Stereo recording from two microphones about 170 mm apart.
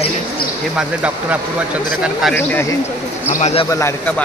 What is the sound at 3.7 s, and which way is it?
Speech, 15° left (ahead or behind).